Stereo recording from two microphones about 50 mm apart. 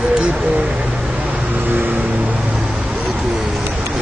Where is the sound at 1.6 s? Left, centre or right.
Right.